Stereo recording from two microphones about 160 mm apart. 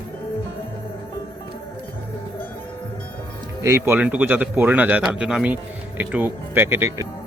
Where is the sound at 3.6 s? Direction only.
15° right (ahead or behind).